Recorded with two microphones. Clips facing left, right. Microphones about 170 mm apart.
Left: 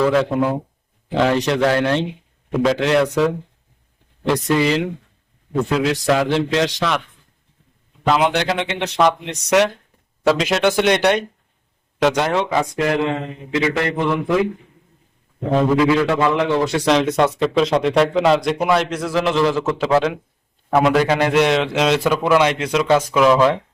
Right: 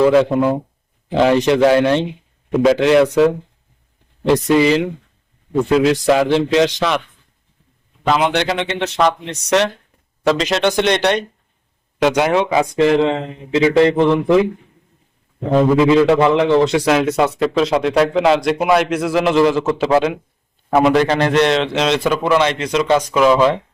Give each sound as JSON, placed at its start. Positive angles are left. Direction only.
{"t": 0.0, "sound": "a man's voice", "side_deg": -10}
{"t": 4.4, "sound": "a man's voice", "side_deg": -5}
{"t": 8.1, "sound": "a man's voice", "side_deg": 5}
{"t": 11.9, "sound": "a man's voice", "side_deg": -5}
{"t": 12.7, "sound": "speech", "side_deg": -25}
{"t": 15.8, "sound": "speech", "side_deg": -25}
{"t": 16.8, "sound": "a man's voice", "side_deg": -5}
{"t": 21.0, "sound": "a man's voice", "side_deg": 10}